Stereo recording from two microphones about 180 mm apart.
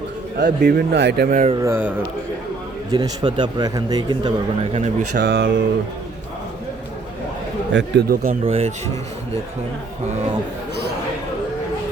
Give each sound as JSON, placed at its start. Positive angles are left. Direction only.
{"t": 0.3, "sound": "a man's voice", "side_deg": -60}
{"t": 1.6, "sound": "a man's voice", "side_deg": -15}
{"t": 2.9, "sound": "a man's voice", "side_deg": -20}
{"t": 4.7, "sound": "speech", "side_deg": -40}
{"t": 5.4, "sound": "speech", "side_deg": -80}
{"t": 7.7, "sound": "speech", "side_deg": -80}
{"t": 8.1, "sound": "speech", "side_deg": -40}